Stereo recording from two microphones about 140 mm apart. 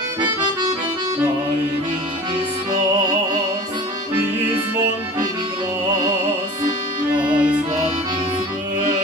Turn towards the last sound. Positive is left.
turn(degrees=-10)  # may be behind; listen again after turning